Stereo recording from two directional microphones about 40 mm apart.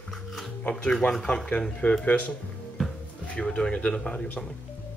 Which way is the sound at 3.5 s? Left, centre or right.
Left.